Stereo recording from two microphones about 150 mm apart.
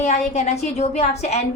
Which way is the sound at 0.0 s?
45° left (ahead or behind).